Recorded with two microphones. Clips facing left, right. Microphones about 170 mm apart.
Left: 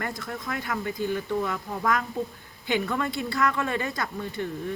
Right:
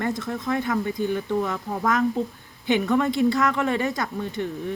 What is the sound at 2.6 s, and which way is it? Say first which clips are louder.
Speech: right 6 dB; 20° right (ahead or behind).